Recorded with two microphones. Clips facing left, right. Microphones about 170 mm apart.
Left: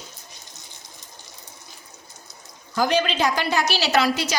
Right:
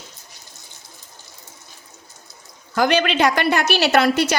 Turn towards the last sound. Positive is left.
turn(degrees=-60)  # may be behind; listen again after turning